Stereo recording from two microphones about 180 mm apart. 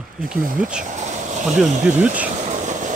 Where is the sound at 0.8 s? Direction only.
40° right (ahead or behind).